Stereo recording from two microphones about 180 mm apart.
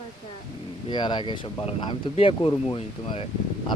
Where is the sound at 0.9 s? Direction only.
25° left (ahead or behind).